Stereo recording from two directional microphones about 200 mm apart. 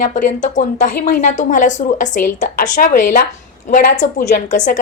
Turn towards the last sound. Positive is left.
turn(degrees=40)  # may be behind; listen again after turning